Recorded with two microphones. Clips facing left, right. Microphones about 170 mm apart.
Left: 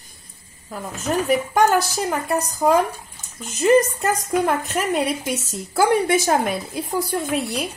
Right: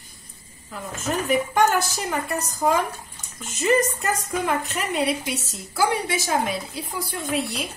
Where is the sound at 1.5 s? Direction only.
40° left (ahead or behind).